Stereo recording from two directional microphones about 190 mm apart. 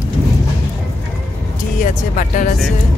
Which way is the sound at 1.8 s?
45° left (ahead or behind).